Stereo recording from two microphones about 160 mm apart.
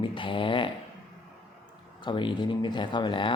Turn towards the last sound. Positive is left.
turn(degrees=30)  # may be behind; listen again after turning